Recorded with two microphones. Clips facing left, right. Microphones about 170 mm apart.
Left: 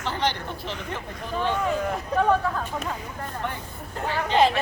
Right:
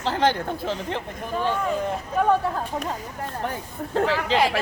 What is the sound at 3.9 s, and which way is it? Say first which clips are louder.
Speech: right 6 dB; 90° right.